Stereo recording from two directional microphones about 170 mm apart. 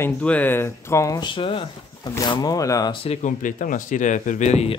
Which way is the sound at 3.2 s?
50° left (ahead or behind).